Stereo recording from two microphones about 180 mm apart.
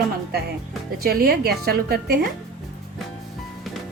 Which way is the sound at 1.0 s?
55° right (ahead or behind).